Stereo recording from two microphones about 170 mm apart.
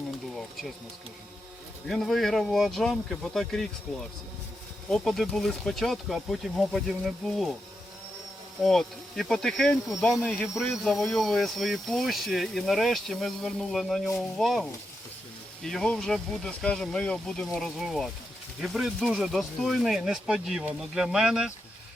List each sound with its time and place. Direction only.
1.9 s speech: centre (ahead or behind)
4.9 s speech: centre (ahead or behind)
8.6 s speech: centre (ahead or behind)